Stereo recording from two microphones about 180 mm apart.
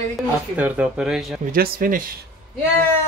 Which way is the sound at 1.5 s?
50° right (ahead or behind).